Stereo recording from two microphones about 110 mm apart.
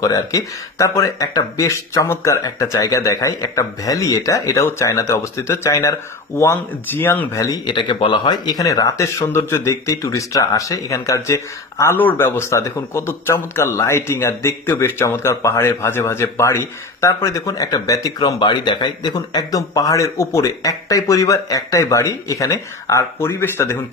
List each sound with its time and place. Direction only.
0.0 s speech: 30° left (ahead or behind)
7.6 s speech: 45° left (ahead or behind)
18.4 s speech: 45° left (ahead or behind); by 23.8 s 20° left (ahead or behind)